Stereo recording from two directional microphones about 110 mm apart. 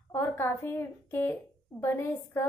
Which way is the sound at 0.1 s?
20° left (ahead or behind).